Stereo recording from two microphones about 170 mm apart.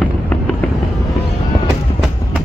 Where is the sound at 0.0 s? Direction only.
10° left (ahead or behind).